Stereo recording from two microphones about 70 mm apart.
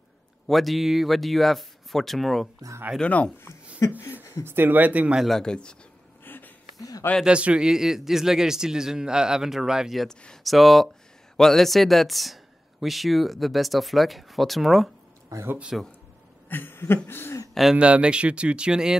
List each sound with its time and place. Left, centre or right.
0.5 s speech: centre
3.0 s speech: centre
3.8 s a sound: left
4.5 s speech: right
5.3 s speech: centre
6.2 s a sound: left
6.8 s a sound: left
7.2 s a man's voice: centre
10.0 s speech: centre
15.3 s speech: right
15.7 s speech: centre
16.4 s a sound: left
17.1 s speech: left
17.7 s a man's voice: centre